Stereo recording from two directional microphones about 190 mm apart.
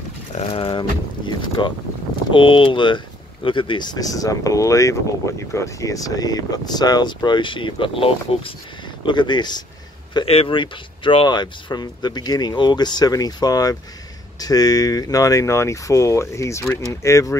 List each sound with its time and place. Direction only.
0.3 s speech: 30° left (ahead or behind); by 17.4 s 15° left (ahead or behind)